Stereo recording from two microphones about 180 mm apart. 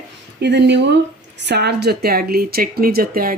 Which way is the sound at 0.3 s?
70° right (ahead or behind).